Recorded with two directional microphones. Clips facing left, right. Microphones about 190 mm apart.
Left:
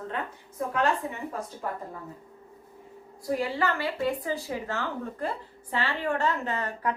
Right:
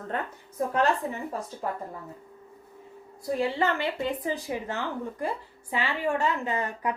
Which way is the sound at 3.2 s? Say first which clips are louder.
Right 1 dB; 25° right (ahead or behind).